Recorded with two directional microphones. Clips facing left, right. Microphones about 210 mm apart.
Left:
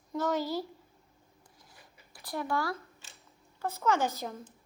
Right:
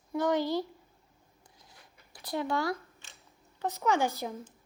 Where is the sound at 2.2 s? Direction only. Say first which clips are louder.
Right 2 dB; 20° right (ahead or behind).